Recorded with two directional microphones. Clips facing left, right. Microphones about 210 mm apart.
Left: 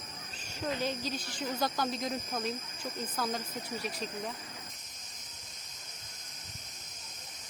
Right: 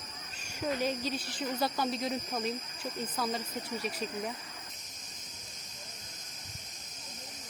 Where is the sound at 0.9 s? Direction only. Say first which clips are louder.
Right 2 dB; 35° right (ahead or behind).